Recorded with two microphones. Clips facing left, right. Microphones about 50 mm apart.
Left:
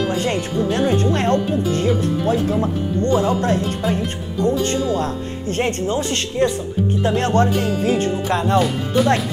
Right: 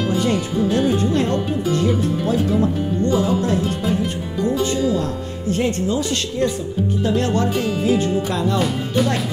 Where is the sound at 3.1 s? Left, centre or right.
Left.